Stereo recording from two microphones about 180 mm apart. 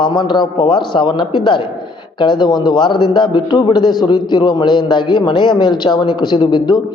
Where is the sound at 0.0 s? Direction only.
25° left (ahead or behind).